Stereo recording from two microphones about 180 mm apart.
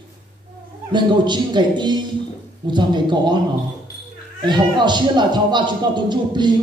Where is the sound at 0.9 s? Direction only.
25° right (ahead or behind).